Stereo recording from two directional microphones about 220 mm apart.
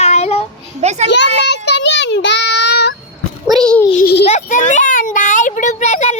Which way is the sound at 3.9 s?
45° left (ahead or behind).